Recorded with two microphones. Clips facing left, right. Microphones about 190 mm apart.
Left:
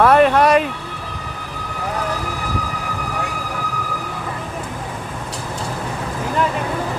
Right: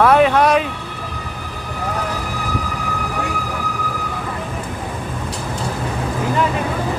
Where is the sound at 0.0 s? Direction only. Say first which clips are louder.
Even; centre (ahead or behind).